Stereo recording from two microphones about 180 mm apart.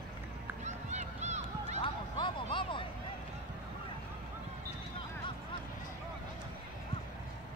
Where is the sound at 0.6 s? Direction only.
40° right (ahead or behind).